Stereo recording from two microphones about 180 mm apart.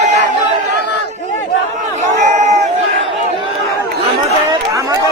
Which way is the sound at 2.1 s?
40° right (ahead or behind).